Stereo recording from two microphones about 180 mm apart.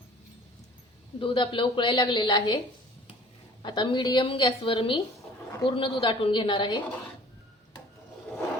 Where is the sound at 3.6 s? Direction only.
25° left (ahead or behind).